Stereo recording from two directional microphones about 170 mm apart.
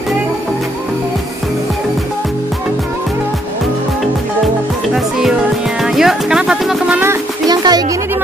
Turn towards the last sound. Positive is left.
turn(degrees=-25)  # may be behind; listen again after turning